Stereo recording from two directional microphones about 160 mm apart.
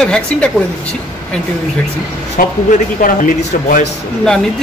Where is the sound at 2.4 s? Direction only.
65° left (ahead or behind).